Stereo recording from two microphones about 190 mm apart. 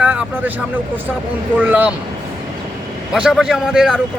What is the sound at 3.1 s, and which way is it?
Speech, 5° right (ahead or behind).